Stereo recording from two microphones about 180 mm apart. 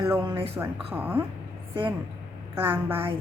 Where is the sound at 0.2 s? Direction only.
30° right (ahead or behind).